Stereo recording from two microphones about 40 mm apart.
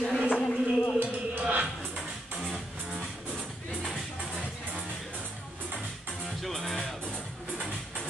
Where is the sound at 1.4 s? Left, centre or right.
Right.